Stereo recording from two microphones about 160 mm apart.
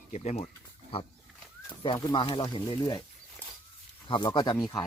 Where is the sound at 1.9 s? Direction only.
25° left (ahead or behind).